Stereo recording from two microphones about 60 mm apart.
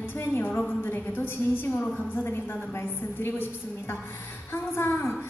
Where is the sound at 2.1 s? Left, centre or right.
Left.